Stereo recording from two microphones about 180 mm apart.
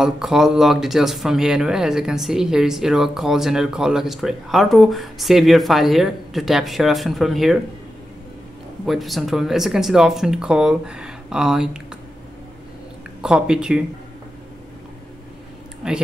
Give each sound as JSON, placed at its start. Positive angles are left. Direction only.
{"t": 0.0, "sound": "speech", "side_deg": 0}
{"t": 8.8, "sound": "speech", "side_deg": 0}
{"t": 13.2, "sound": "speech", "side_deg": -5}
{"t": 15.8, "sound": "speech", "side_deg": -5}